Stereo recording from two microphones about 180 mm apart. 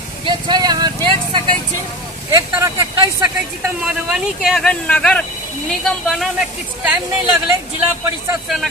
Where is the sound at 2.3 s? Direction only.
20° right (ahead or behind).